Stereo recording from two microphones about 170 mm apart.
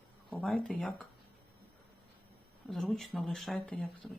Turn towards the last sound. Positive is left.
turn(degrees=5)  # may be behind; listen again after turning